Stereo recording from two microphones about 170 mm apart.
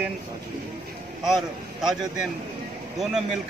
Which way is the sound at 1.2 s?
Centre (ahead or behind).